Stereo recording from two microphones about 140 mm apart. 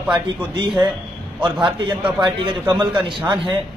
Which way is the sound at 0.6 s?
30° right (ahead or behind).